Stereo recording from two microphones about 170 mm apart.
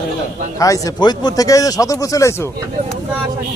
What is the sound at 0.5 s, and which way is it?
Speech, 20° left (ahead or behind).